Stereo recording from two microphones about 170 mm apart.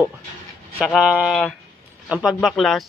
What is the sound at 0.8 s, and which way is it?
Speech, 5° right (ahead or behind).